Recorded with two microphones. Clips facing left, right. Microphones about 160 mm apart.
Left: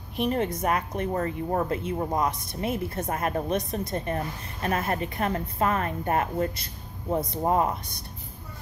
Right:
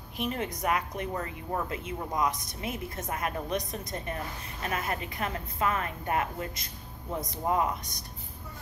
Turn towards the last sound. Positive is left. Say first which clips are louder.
# left 4 dB
turn(degrees=30)  # may be behind; listen again after turning